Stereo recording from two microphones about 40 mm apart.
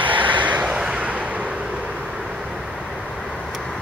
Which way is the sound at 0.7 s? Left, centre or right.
Right.